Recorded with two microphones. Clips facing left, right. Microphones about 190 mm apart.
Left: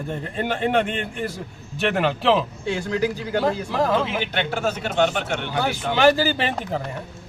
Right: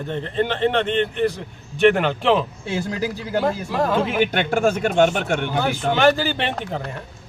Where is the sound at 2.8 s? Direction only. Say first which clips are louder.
Left 4 dB; 40° right (ahead or behind).